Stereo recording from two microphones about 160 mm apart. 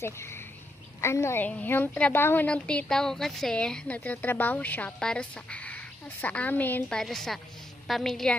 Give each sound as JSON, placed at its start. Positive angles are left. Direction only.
{"t": 0.0, "sound": "a woman's voice", "side_deg": 15}